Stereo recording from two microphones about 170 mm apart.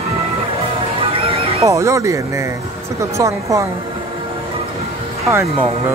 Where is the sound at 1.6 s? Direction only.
20° right (ahead or behind).